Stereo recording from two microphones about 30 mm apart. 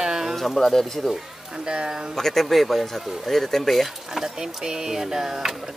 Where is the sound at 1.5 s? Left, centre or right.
Right.